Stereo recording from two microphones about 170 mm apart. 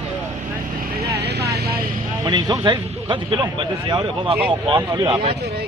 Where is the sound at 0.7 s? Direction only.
65° right (ahead or behind).